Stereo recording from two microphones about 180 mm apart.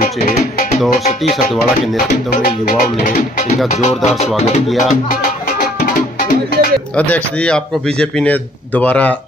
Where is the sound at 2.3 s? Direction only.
50° left (ahead or behind).